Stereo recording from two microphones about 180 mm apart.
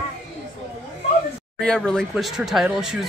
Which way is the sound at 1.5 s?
5° left (ahead or behind).